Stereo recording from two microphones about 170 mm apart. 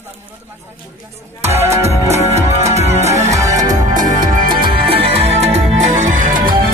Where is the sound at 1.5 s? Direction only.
15° right (ahead or behind).